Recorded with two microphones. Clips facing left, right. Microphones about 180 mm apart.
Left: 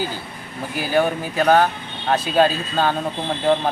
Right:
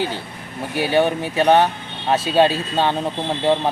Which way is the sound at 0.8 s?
25° right (ahead or behind).